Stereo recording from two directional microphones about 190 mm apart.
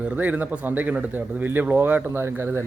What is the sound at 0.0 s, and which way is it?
Speech, 10° right (ahead or behind).